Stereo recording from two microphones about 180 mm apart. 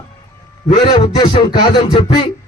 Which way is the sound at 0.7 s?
30° left (ahead or behind).